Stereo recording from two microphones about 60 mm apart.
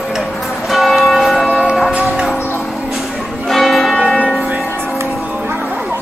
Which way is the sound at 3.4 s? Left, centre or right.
Centre.